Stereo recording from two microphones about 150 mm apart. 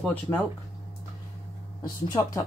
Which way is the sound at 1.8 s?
25° left (ahead or behind).